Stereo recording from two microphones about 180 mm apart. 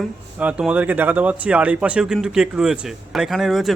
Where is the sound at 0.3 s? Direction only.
5° right (ahead or behind).